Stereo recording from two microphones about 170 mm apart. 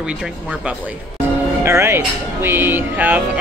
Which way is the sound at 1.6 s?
15° right (ahead or behind).